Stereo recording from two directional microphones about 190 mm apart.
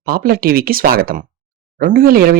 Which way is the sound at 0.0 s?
50° right (ahead or behind).